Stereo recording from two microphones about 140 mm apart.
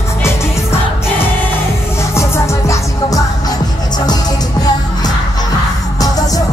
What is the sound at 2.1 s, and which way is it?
Music, 20° left (ahead or behind).